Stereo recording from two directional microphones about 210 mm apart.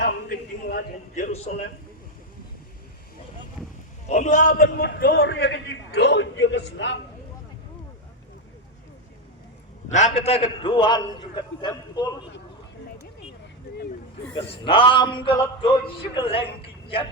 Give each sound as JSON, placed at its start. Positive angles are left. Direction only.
{"t": 0.0, "sound": "a sound", "side_deg": 45}
{"t": 4.1, "sound": "a man's voice", "side_deg": 35}
{"t": 9.9, "sound": "a man's voice", "side_deg": 30}
{"t": 14.6, "sound": "a man's voice", "side_deg": 25}